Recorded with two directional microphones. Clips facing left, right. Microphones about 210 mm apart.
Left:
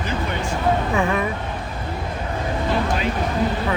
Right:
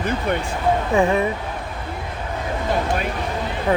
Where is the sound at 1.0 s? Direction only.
30° right (ahead or behind).